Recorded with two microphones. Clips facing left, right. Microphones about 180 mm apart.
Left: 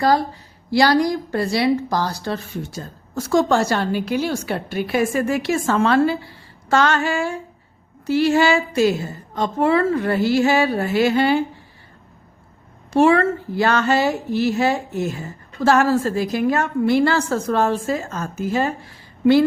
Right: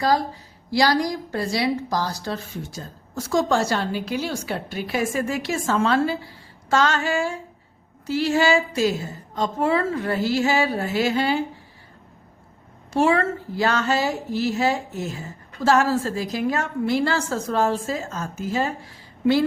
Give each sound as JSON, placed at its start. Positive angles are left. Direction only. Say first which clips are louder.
{"t": 0.7, "sound": "a woman's voice", "louder": "left 4 dB", "side_deg": 60}
{"t": 12.9, "sound": "a woman's voice", "louder": "left 5 dB", "side_deg": 60}